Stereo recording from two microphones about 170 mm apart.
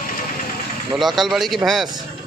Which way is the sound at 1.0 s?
Centre (ahead or behind).